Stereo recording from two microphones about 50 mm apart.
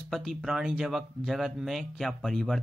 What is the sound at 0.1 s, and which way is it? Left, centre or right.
Speech, centre.